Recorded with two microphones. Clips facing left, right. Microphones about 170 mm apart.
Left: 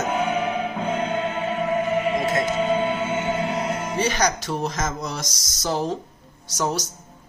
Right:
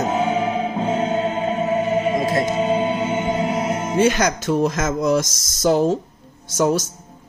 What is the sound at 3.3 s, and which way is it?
Music, 30° right (ahead or behind).